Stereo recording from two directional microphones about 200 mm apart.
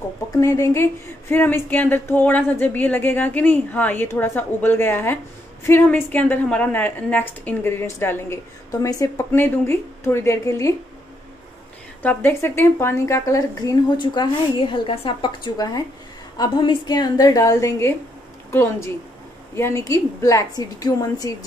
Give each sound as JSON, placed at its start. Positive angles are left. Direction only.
{"t": 0.3, "sound": "speech", "side_deg": 15}
{"t": 12.0, "sound": "a woman's voice", "side_deg": 10}